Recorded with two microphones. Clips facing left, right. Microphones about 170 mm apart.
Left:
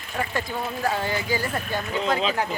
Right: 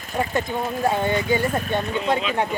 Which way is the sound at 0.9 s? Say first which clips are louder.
Right 5 dB; 25° right (ahead or behind).